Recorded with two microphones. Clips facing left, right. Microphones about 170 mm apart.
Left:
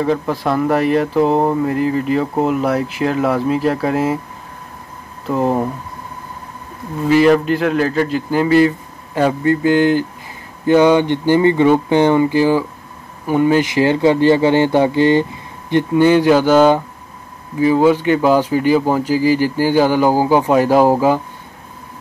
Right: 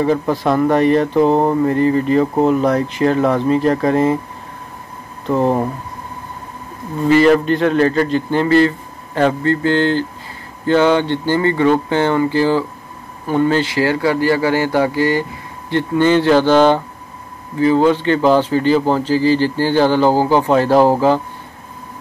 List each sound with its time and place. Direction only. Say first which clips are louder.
0.0 s speech: right 2 dB; centre (ahead or behind)
5.2 s speech: right 1 dB; 5° left (ahead or behind)
7.1 s speech: even; 5° left (ahead or behind)